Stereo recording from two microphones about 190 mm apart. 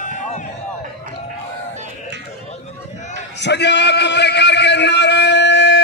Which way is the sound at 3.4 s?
65° left (ahead or behind).